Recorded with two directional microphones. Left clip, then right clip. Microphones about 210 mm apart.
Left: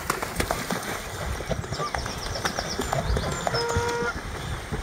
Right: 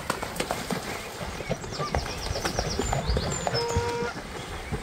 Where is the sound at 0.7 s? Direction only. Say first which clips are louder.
Left 2 dB; 5° left (ahead or behind).